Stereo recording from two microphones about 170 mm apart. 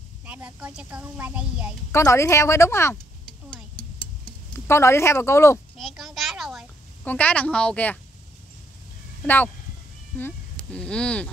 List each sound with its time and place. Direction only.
0.2 s a woman's voice: 10° right (ahead or behind)
1.9 s speech: 15° left (ahead or behind)
4.2 s speech: 15° left (ahead or behind)
5.8 s a sound: centre (ahead or behind)
7.1 s speech: 10° left (ahead or behind)
9.2 s speech: 10° left (ahead or behind)